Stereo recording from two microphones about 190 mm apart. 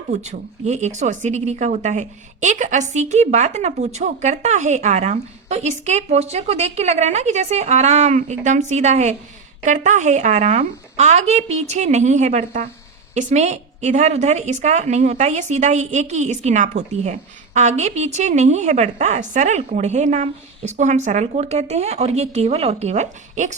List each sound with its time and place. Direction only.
0.1 s speech: 35° right (ahead or behind)